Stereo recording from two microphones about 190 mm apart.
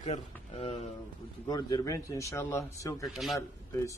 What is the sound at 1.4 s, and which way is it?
Speech, 20° left (ahead or behind).